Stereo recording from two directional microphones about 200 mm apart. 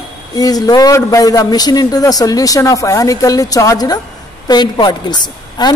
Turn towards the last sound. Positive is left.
turn(degrees=20)  # may be behind; listen again after turning